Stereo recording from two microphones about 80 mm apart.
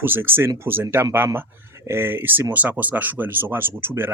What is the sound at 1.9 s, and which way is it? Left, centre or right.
Speech, right.